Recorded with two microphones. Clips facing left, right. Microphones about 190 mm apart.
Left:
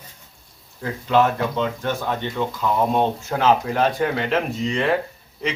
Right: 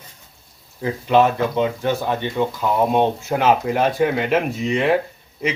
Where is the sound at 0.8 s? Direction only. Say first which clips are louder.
Right 3 dB; 15° right (ahead or behind).